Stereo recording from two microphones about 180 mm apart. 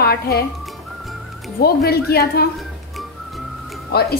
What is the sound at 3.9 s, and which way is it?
Speech, 60° left (ahead or behind).